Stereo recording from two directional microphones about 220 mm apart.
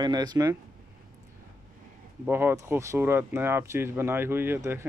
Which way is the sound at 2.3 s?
10° right (ahead or behind).